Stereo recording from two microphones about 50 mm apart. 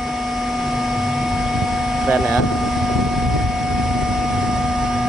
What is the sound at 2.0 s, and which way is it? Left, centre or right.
Speech, centre.